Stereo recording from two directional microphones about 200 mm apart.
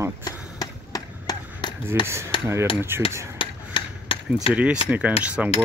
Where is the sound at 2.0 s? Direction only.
15° right (ahead or behind).